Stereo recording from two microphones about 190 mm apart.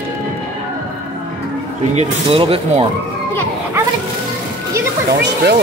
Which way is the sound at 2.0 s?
30° right (ahead or behind).